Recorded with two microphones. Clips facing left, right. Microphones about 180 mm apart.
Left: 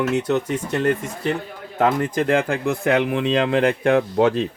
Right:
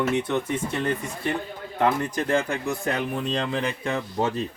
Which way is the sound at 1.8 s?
90° left.